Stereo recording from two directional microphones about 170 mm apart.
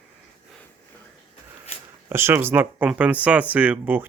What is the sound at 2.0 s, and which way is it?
Speech, 15° right (ahead or behind).